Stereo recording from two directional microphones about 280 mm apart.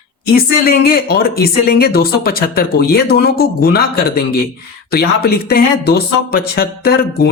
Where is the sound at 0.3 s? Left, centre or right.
Left.